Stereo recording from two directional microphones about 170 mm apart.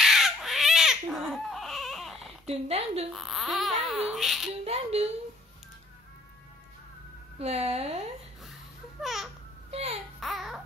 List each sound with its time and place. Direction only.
0.0 s crying: centre (ahead or behind)
2.4 s speech: 35° right (ahead or behind)
3.1 s speech: centre (ahead or behind)
4.6 s speech: 40° right (ahead or behind)
7.3 s speech: 35° right (ahead or behind)
9.0 s a sound: centre (ahead or behind)
9.7 s speech: 35° right (ahead or behind)
10.2 s a sound: centre (ahead or behind)